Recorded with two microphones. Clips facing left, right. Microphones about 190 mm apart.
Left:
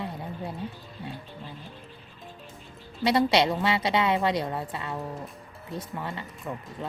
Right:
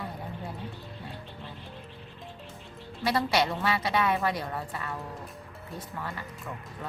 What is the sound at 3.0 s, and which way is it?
A woman's voice, 20° left (ahead or behind).